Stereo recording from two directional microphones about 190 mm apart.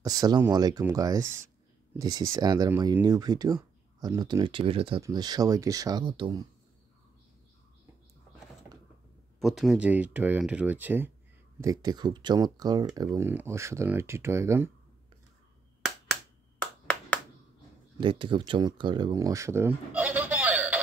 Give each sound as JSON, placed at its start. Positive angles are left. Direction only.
{"t": 0.0, "sound": "speech", "side_deg": -20}
{"t": 9.4, "sound": "speech", "side_deg": 0}
{"t": 18.0, "sound": "speech", "side_deg": -25}